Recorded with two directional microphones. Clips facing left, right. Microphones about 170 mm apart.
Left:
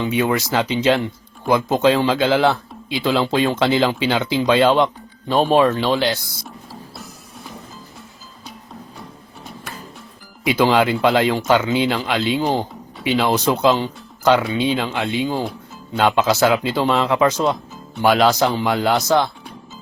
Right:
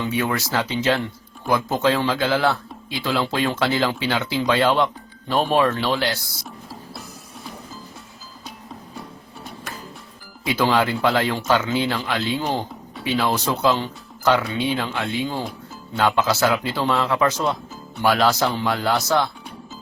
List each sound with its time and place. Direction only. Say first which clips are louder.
0.0 s speech: left 4 dB; 20° left (ahead or behind)
6.4 s music: left 1 dB; centre (ahead or behind)
10.4 s speech: left 4 dB; 20° left (ahead or behind)